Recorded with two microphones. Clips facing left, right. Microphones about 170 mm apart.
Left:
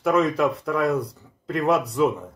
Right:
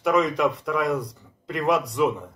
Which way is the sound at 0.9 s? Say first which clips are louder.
Left 2 dB; 30° left (ahead or behind).